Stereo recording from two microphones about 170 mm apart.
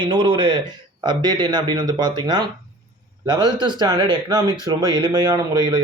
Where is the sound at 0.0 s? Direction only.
30° right (ahead or behind).